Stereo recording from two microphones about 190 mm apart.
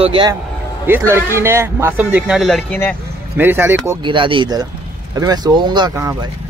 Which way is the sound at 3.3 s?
10° right (ahead or behind).